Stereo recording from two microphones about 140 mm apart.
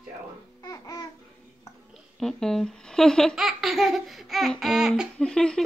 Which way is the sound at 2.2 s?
5° left (ahead or behind).